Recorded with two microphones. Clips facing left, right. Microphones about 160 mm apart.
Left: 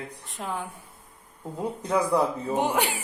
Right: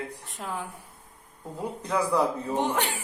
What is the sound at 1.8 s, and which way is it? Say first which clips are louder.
Speech: left 1 dB; 10° left (ahead or behind).